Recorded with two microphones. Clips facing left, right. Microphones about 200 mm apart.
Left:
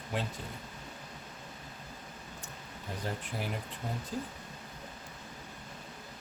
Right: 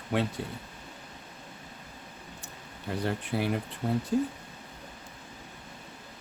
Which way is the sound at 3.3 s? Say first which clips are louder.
Right 10 dB; 75° right (ahead or behind).